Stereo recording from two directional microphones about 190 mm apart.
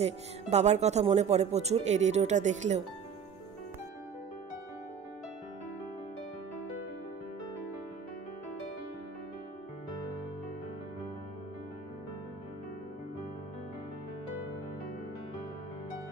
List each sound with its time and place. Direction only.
0.0 s speech: 35° right (ahead or behind)